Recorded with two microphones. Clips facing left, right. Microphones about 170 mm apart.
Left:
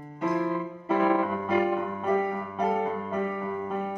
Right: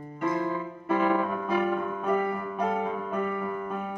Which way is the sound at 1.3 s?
10° left (ahead or behind).